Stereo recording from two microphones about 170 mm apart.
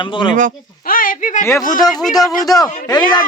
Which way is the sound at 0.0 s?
30° left (ahead or behind).